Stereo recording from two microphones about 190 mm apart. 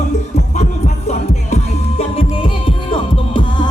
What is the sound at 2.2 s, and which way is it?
Music, 30° left (ahead or behind).